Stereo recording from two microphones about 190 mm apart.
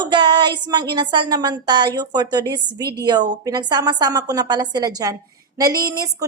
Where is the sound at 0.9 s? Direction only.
25° right (ahead or behind).